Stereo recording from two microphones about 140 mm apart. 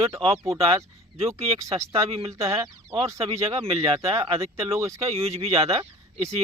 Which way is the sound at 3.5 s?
40° right (ahead or behind).